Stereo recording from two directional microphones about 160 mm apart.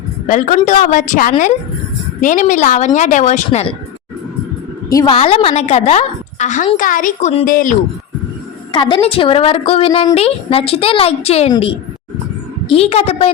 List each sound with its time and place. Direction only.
0.3 s a woman's voice: 50° left (ahead or behind)
4.9 s a woman's voice: 20° left (ahead or behind)
5.1 s a woman's voice: 35° left (ahead or behind); by 7.8 s 55° left (ahead or behind)
8.7 s a woman's voice: 30° left (ahead or behind)
12.7 s a woman's voice: 40° left (ahead or behind)